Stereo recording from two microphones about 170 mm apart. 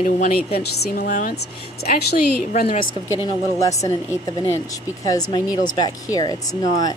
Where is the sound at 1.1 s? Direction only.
50° left (ahead or behind).